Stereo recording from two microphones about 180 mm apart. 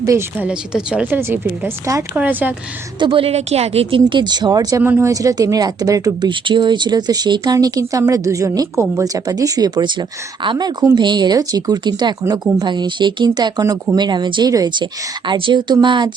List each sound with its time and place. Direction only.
0.0 s a woman's voice: 15° right (ahead or behind)
3.0 s a woman's voice: 30° right (ahead or behind)